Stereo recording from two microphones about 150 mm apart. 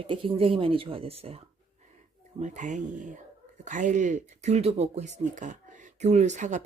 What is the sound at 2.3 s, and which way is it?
Speech, 55° right (ahead or behind).